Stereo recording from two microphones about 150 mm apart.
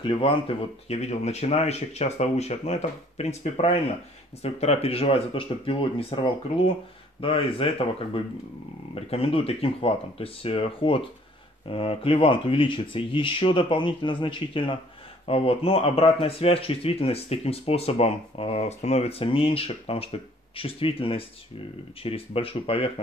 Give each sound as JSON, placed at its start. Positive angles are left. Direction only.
{"t": 0.0, "sound": "speech", "side_deg": 35}